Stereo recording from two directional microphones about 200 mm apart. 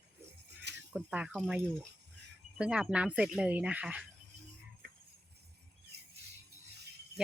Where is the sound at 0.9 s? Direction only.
Centre (ahead or behind).